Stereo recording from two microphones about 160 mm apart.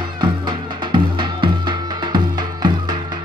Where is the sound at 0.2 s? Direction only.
30° right (ahead or behind).